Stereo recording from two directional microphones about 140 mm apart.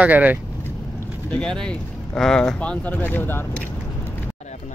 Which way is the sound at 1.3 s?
5° left (ahead or behind).